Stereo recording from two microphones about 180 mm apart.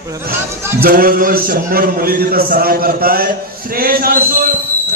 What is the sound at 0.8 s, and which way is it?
A man's voice, 55° right (ahead or behind).